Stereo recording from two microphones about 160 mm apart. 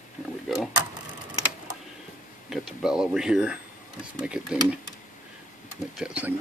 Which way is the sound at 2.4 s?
5° right (ahead or behind).